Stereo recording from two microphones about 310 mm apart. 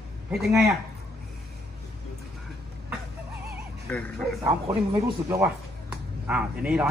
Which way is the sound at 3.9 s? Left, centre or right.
Centre.